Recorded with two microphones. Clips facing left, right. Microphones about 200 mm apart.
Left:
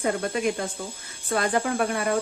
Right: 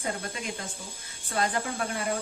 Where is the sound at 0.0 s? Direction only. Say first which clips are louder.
Left 9 dB; 60° left (ahead or behind).